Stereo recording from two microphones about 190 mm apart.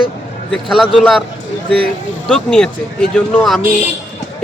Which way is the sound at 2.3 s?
5° left (ahead or behind).